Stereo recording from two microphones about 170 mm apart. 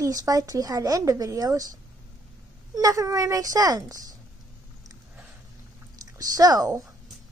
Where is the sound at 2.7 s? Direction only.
20° right (ahead or behind).